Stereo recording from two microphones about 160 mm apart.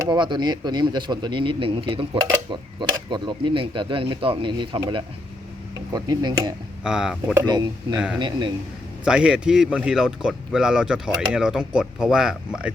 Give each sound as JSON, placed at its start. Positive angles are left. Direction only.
{"t": 0.1, "sound": "speech", "side_deg": -30}
{"t": 6.8, "sound": "speech", "side_deg": -5}
{"t": 7.4, "sound": "speech", "side_deg": -25}
{"t": 7.9, "sound": "speech", "side_deg": -5}
{"t": 8.2, "sound": "speech", "side_deg": -30}
{"t": 9.0, "sound": "speech", "side_deg": -5}